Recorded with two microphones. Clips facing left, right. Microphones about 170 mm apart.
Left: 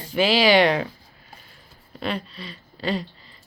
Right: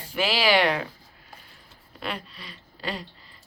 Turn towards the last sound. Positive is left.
turn(degrees=-10)  # may be behind; listen again after turning